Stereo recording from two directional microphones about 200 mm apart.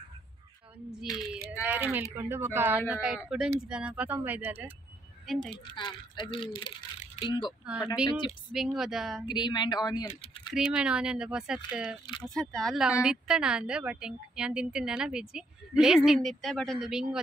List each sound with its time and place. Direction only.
1.1 s a woman's voice: centre (ahead or behind)
5.5 s speech: 20° left (ahead or behind)
7.6 s a woman's voice: 5° right (ahead or behind)
9.3 s speech: 20° left (ahead or behind)
10.5 s a woman's voice: 5° right (ahead or behind)